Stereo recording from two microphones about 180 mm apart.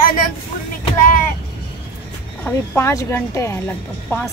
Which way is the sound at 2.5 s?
15° left (ahead or behind).